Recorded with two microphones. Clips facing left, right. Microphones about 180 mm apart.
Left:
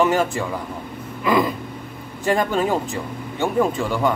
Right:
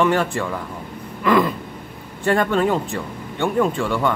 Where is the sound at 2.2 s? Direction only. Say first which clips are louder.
Right 2 dB; 15° left (ahead or behind).